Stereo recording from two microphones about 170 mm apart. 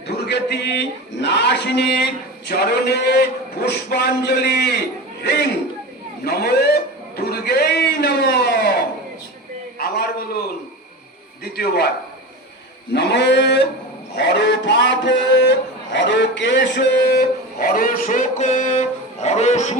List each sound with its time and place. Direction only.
0.1 s a man's voice: 80° left
6.2 s a man's voice: 70° left (ahead or behind)
11.5 s a man's voice: 65° left (ahead or behind)
12.9 s a man's voice: 85° left; by 19.7 s 40° left (ahead or behind)